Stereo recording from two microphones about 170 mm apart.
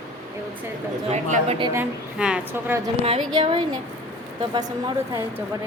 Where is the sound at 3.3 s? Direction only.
30° right (ahead or behind).